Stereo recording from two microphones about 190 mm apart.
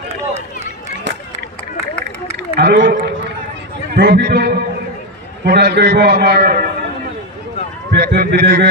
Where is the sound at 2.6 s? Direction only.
55° right (ahead or behind).